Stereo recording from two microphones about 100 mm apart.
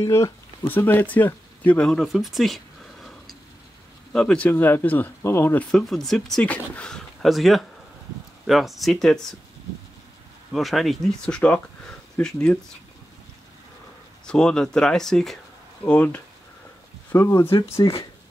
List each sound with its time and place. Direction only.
0.0 s speech: 30° left (ahead or behind)
0.7 s speech: 20° left (ahead or behind)
1.9 s a sound: centre (ahead or behind)
4.1 s speech: 5° left (ahead or behind)
4.5 s speech: 20° left (ahead or behind)
5.7 s speech: 5° left (ahead or behind)
10.5 s speech: centre (ahead or behind)
14.2 s speech: 10° left (ahead or behind)
15.8 s speech: 15° left (ahead or behind)
17.1 s speech: 30° left (ahead or behind)